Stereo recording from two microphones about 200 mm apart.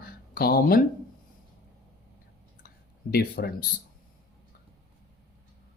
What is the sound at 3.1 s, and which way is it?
Speech, 50° left (ahead or behind).